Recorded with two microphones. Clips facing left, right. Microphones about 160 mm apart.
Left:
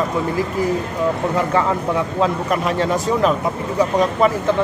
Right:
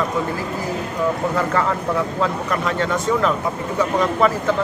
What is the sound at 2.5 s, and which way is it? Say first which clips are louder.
Speech: left 2 dB; 20° left (ahead or behind).